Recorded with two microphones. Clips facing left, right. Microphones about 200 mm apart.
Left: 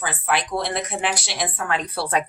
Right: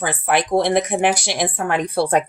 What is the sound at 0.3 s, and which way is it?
Speech, 50° right (ahead or behind).